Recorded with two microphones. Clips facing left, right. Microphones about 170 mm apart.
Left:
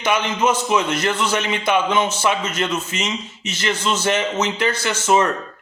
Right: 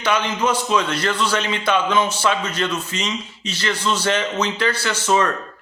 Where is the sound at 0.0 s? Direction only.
15° left (ahead or behind).